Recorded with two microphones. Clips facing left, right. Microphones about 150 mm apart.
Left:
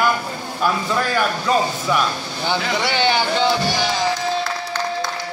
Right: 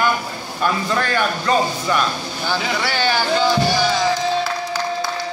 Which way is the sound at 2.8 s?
20° left (ahead or behind).